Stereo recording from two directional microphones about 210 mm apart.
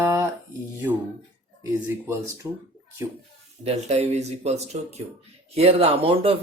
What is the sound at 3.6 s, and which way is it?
Speech, 30° right (ahead or behind).